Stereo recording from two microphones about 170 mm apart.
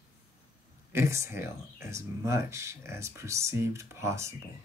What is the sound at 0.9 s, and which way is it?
Speech, 15° right (ahead or behind).